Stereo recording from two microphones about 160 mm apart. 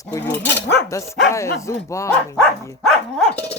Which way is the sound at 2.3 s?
5° left (ahead or behind).